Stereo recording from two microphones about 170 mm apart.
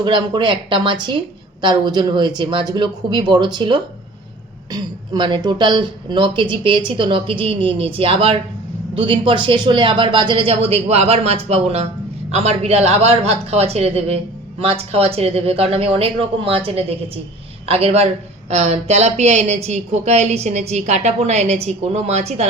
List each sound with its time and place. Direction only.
0.0 s speech: 30° right (ahead or behind)